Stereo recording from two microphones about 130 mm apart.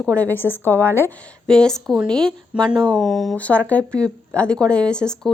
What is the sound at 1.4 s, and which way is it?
Speech, 5° left (ahead or behind).